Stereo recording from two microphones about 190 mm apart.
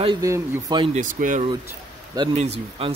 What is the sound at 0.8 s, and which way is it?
Speech, 40° right (ahead or behind).